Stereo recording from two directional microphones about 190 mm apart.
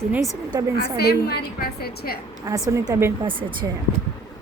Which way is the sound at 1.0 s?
55° left (ahead or behind).